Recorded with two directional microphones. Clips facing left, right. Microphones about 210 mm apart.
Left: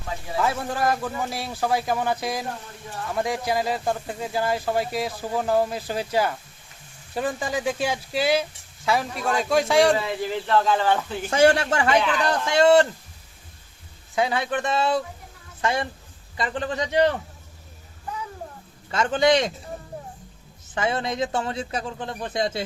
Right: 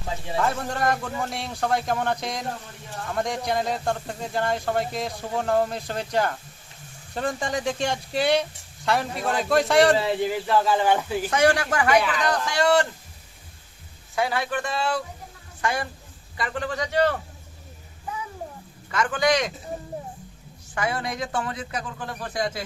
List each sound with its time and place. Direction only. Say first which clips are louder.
0.3 s speech: left 1 dB; 5° left (ahead or behind)
10.0 s speech: right 4 dB; 30° right (ahead or behind)
10.2 s speech: even; 10° right (ahead or behind)
11.3 s a man's voice: left 3 dB; 25° left (ahead or behind)
14.2 s a man's voice: left 2 dB; 20° left (ahead or behind)
18.9 s a man's voice: left 3 dB; 25° left (ahead or behind)
20.7 s a man's voice: left 3 dB; 25° left (ahead or behind)